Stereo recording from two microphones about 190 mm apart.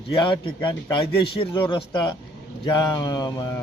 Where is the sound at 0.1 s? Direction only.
25° left (ahead or behind).